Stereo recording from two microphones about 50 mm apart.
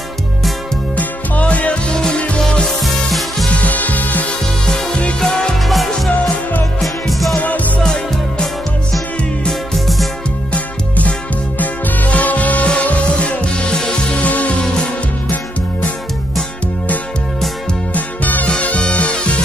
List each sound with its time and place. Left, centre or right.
0.9 s music: left
2.8 s music: centre
3.6 s music: left
5.2 s music: centre
6.8 s music: centre
7.3 s music: left
7.8 s music: centre
9.5 s music: centre
10.5 s music: left
14.2 s music: left
17.9 s music: left